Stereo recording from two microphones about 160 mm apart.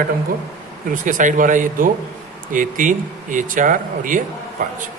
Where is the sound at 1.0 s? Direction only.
55° right (ahead or behind).